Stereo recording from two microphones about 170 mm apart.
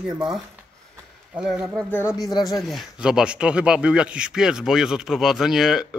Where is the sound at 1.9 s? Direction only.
15° left (ahead or behind).